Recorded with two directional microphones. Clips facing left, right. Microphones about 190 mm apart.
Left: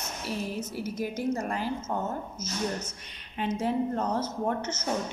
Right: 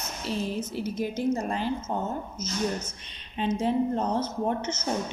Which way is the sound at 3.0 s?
25° right (ahead or behind).